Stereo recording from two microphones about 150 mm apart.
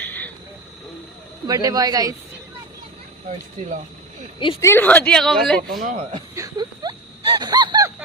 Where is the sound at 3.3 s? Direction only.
55° right (ahead or behind).